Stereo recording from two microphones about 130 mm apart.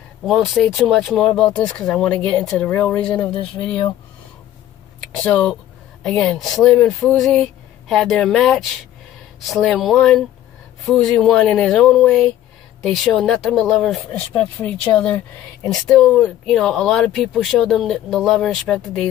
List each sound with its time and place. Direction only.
0.2 s speech: centre (ahead or behind)
3.3 s speech: 45° left (ahead or behind)
5.2 s speech: 5° left (ahead or behind)